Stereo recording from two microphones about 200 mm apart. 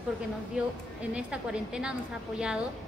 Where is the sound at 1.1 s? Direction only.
5° right (ahead or behind).